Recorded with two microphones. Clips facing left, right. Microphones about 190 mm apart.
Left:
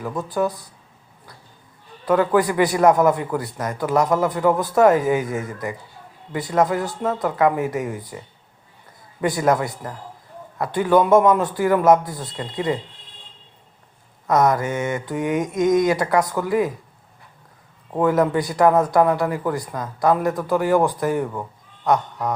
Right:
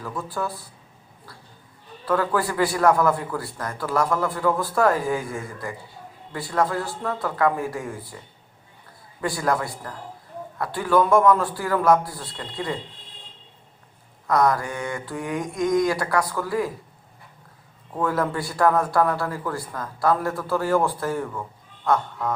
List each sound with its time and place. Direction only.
0.0 s speech: 20° left (ahead or behind)
2.0 s a man's voice: 20° left (ahead or behind)
9.2 s a man's voice: 20° left (ahead or behind)
14.3 s a man's voice: 20° left (ahead or behind)
17.9 s a man's voice: 20° left (ahead or behind)